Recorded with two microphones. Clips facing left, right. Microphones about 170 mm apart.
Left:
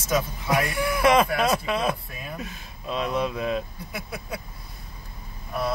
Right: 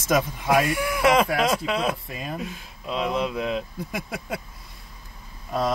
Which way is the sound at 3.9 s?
90° right.